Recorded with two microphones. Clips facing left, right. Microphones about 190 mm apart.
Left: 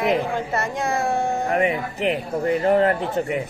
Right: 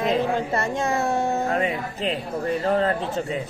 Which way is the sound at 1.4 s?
15° left (ahead or behind).